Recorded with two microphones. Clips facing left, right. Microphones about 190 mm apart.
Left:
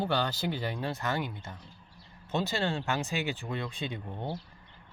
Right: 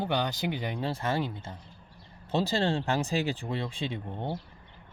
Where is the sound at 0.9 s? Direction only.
30° right (ahead or behind).